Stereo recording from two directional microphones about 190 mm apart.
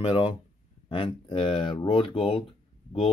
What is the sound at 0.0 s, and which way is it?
Speech, 25° left (ahead or behind).